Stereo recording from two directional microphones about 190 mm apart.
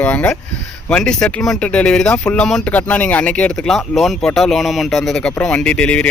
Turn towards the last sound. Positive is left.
turn(degrees=5)  # may be behind; listen again after turning